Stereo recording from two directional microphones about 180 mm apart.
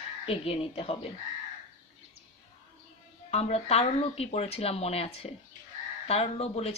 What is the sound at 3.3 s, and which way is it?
Speech, 35° left (ahead or behind).